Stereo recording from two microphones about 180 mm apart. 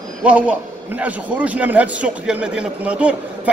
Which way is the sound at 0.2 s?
5° right (ahead or behind).